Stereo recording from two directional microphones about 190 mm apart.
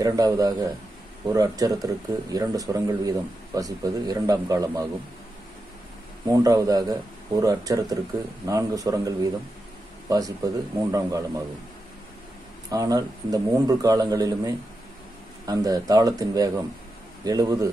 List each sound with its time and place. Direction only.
0.0 s speech: 20° right (ahead or behind)
6.2 s a man's voice: 15° right (ahead or behind)
12.6 s speech: 20° right (ahead or behind)